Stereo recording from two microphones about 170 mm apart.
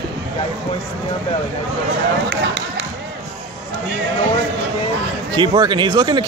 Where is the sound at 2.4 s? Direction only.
80° right.